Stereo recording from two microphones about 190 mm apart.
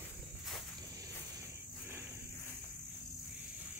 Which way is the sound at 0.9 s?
15° right (ahead or behind).